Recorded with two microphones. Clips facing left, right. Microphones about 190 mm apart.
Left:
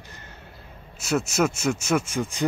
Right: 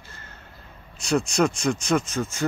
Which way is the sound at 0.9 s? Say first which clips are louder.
Right 1 dB; 5° left (ahead or behind).